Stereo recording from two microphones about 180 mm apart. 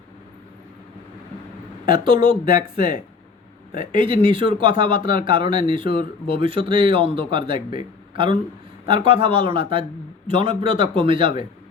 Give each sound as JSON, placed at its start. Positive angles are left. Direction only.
{"t": 2.0, "sound": "speech", "side_deg": -25}
{"t": 2.4, "sound": "speech", "side_deg": 50}
{"t": 3.9, "sound": "speech", "side_deg": -30}
{"t": 4.9, "sound": "speech", "side_deg": 50}
{"t": 5.2, "sound": "a man's voice", "side_deg": -30}